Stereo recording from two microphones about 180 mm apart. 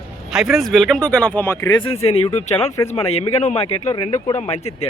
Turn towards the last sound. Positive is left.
turn(degrees=30)  # may be behind; listen again after turning